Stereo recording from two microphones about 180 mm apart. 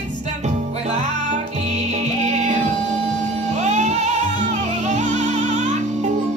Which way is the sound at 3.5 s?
40° right (ahead or behind).